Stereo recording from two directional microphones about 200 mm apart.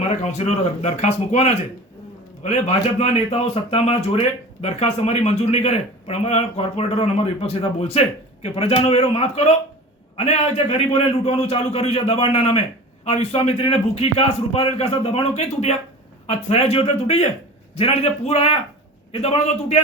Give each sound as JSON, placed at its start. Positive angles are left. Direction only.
{"t": 0.0, "sound": "a man's voice", "side_deg": 35}